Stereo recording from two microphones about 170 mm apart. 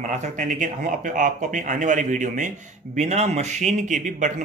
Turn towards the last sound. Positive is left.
turn(degrees=-45)  # may be behind; listen again after turning